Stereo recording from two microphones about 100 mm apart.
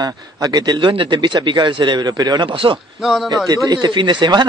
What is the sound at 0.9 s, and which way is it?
Speech, 55° right (ahead or behind).